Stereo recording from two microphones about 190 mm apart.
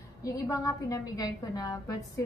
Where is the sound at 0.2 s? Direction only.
15° left (ahead or behind).